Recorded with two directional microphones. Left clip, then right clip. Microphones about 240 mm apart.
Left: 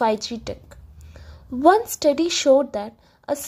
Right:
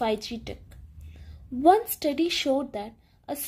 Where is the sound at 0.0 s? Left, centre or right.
Centre.